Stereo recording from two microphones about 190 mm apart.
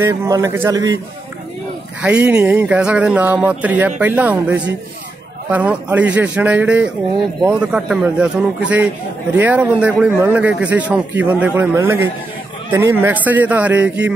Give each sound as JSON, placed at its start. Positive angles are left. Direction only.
{"t": 0.0, "sound": "a man's voice", "side_deg": -15}
{"t": 2.0, "sound": "a man's voice", "side_deg": -5}